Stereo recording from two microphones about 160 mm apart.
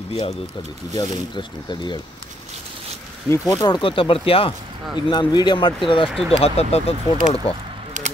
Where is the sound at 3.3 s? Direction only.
20° left (ahead or behind); by 6.9 s 40° left (ahead or behind).